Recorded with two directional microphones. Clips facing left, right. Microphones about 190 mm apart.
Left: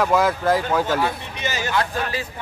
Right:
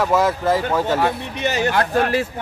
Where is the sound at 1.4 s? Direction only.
60° right (ahead or behind).